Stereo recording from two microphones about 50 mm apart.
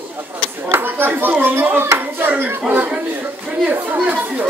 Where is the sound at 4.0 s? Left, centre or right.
Right.